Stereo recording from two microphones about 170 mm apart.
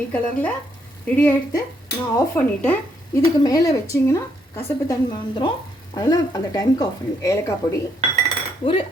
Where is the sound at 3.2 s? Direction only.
20° left (ahead or behind).